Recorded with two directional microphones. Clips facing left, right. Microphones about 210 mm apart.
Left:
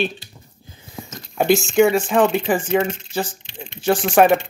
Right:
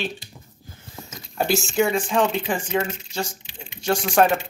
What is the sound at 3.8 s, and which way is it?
Speech, 5° left (ahead or behind).